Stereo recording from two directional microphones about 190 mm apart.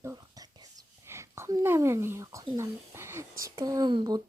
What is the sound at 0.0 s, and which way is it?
Whispering, 20° right (ahead or behind).